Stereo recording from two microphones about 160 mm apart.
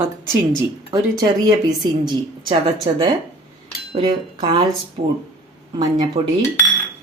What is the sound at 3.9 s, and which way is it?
Speech, 35° right (ahead or behind).